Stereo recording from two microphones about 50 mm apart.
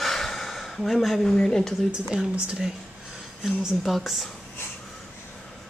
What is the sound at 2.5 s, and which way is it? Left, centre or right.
A woman's voice, centre.